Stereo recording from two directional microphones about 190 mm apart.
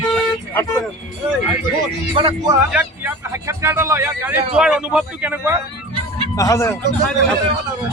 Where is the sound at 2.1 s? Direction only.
25° right (ahead or behind).